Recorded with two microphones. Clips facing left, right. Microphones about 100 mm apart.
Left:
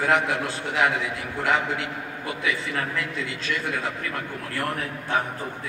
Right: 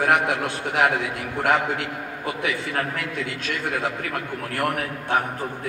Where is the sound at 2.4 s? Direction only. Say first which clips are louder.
Right 1 dB; 60° right (ahead or behind).